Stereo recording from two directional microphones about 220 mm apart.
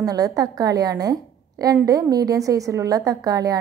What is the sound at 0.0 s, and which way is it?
A woman's voice, 15° right (ahead or behind).